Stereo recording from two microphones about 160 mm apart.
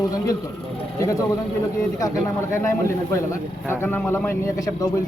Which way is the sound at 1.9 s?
20° left (ahead or behind).